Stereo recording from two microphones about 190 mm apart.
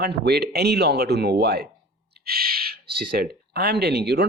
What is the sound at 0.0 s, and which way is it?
Speech, 60° right (ahead or behind).